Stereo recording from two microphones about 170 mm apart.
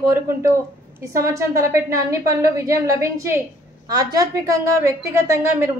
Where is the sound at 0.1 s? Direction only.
15° right (ahead or behind).